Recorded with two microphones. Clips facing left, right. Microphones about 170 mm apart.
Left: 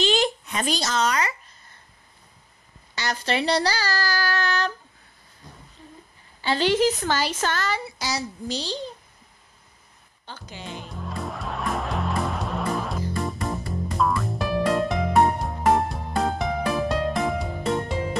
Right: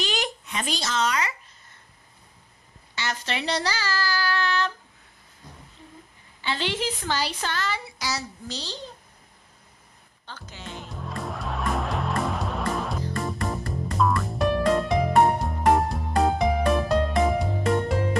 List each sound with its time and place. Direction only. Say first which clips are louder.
0.0 s a sound: left 7 dB; 25° left (ahead or behind)
0.5 s a child's voice: left 3 dB; 40° left (ahead or behind)
3.0 s child singing: left 4 dB; 35° left (ahead or behind)
6.4 s a woman's voice: left 8 dB; 40° left (ahead or behind)
8.0 s speech: left 3 dB; 15° left (ahead or behind)
10.2 s speech: left 2 dB; 10° left (ahead or behind)
10.8 s music: even; centre (ahead or behind)